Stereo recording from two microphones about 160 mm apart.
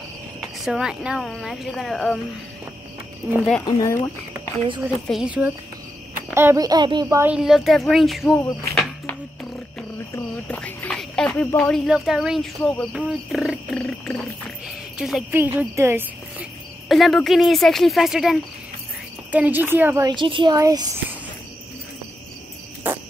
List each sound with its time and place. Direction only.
0.4 s speech: 5° right (ahead or behind)
3.6 s speech: 20° left (ahead or behind)
5.0 s speech: 5° right (ahead or behind)
6.3 s speech: 20° right (ahead or behind)
7.2 s speech: 5° right (ahead or behind)
8.4 s speech: 20° left (ahead or behind)
8.7 s a sound: 5° left (ahead or behind)
15.0 s speech: centre (ahead or behind)
15.3 s speech: 10° right (ahead or behind)
16.9 s speech: centre (ahead or behind)
20.1 s a woman's voice: 30° right (ahead or behind)